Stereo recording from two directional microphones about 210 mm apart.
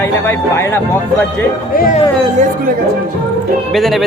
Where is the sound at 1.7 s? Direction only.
45° left (ahead or behind).